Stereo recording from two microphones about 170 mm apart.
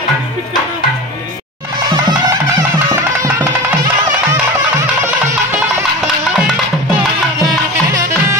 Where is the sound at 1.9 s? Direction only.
25° right (ahead or behind).